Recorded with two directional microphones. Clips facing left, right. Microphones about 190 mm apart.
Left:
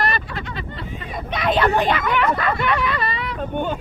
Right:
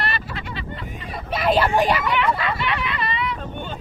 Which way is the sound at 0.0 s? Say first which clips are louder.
Left 4 dB; 45° left (ahead or behind).